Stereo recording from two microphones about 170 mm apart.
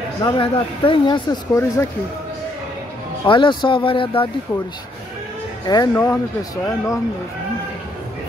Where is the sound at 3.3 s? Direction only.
30° left (ahead or behind).